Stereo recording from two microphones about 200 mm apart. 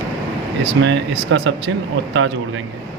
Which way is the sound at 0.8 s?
65° right (ahead or behind).